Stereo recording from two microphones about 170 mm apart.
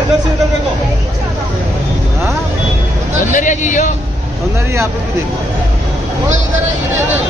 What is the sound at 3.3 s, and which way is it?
Speech, 50° left (ahead or behind).